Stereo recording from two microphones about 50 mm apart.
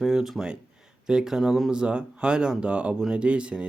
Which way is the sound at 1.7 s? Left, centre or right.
Centre.